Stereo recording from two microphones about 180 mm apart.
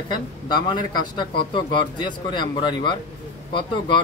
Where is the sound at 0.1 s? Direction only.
25° left (ahead or behind).